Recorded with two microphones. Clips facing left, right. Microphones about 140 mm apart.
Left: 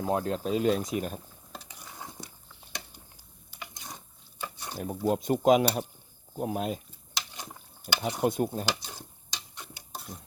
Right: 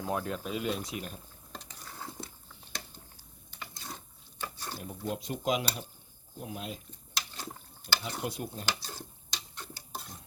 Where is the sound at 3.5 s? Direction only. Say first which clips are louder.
Even; 15° left (ahead or behind).